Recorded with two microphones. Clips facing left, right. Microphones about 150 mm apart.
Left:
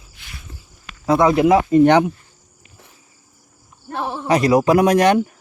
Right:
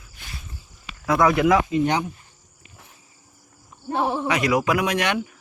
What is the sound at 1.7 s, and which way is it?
Speech, 65° left (ahead or behind).